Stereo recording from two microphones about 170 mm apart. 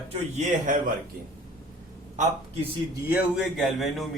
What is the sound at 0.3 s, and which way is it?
Speech, 50° right (ahead or behind).